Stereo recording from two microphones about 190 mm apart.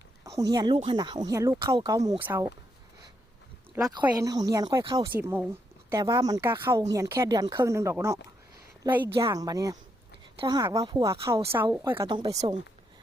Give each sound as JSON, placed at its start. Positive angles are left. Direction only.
{"t": 0.3, "sound": "a woman's voice", "side_deg": -20}
{"t": 3.8, "sound": "speech", "side_deg": -20}
{"t": 5.1, "sound": "a woman's voice", "side_deg": -10}
{"t": 12.0, "sound": "speech", "side_deg": -20}